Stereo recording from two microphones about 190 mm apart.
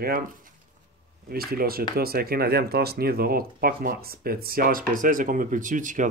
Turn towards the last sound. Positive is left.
turn(degrees=-40)  # may be behind; listen again after turning